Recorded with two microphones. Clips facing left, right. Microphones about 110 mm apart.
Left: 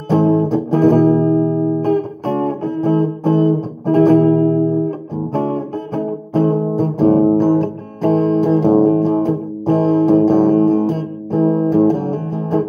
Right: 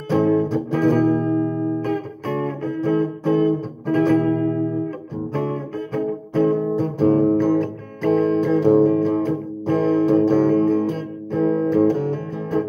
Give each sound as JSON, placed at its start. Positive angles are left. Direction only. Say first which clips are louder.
{"t": 0.1, "sound": "music", "louder": "left 4 dB", "side_deg": 35}